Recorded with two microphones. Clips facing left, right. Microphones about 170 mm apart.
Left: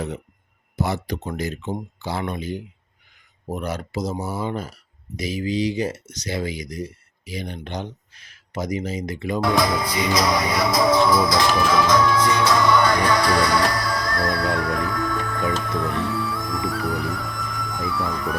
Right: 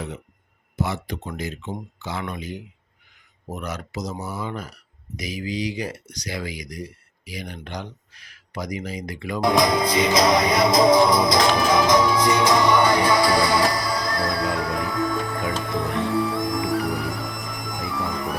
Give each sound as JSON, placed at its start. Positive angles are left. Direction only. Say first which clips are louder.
{"t": 0.8, "sound": "speech", "louder": "left 2 dB", "side_deg": 40}
{"t": 9.4, "sound": "music", "louder": "right 3 dB", "side_deg": -15}